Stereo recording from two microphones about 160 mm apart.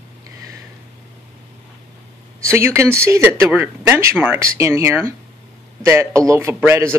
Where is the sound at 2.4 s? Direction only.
15° right (ahead or behind).